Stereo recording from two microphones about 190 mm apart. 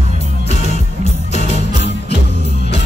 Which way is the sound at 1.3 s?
35° left (ahead or behind).